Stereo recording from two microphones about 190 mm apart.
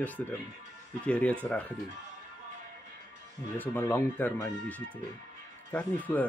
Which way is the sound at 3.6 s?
10° left (ahead or behind).